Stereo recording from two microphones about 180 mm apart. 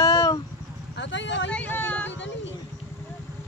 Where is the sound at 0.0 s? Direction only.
20° left (ahead or behind).